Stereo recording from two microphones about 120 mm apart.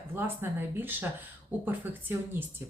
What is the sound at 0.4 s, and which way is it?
Speech, 15° right (ahead or behind).